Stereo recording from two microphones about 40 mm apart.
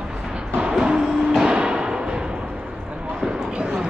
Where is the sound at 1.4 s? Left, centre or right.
Right.